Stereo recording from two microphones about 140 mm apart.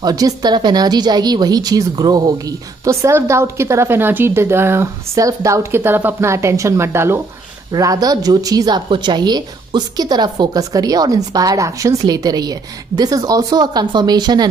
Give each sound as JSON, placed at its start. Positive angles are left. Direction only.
{"t": 0.0, "sound": "a woman's voice", "side_deg": -30}